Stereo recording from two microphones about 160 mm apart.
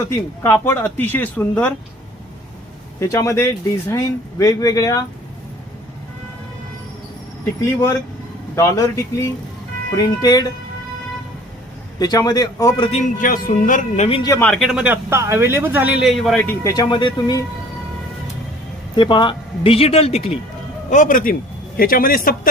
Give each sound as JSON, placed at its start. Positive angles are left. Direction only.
{"t": 0.4, "sound": "speech", "side_deg": 15}
{"t": 3.0, "sound": "speech", "side_deg": 20}
{"t": 8.5, "sound": "speech", "side_deg": 20}
{"t": 11.9, "sound": "speech", "side_deg": 25}
{"t": 12.9, "sound": "speech", "side_deg": 55}
{"t": 14.3, "sound": "speech", "side_deg": 15}
{"t": 14.5, "sound": "speech", "side_deg": 0}
{"t": 15.1, "sound": "speech", "side_deg": -15}
{"t": 16.4, "sound": "speech", "side_deg": 15}
{"t": 18.9, "sound": "speech", "side_deg": 30}
{"t": 20.9, "sound": "speech", "side_deg": 55}